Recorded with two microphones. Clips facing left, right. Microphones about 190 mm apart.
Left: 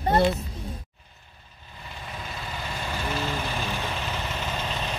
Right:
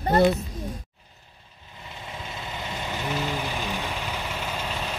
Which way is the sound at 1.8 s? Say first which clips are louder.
Even; 25° right (ahead or behind).